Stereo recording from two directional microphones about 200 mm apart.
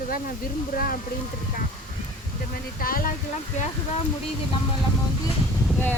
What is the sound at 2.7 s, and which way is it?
Speech, 45° left (ahead or behind).